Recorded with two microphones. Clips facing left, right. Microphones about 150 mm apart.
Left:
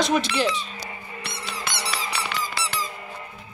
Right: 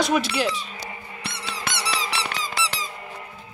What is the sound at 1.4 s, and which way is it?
Squeak, 80° right.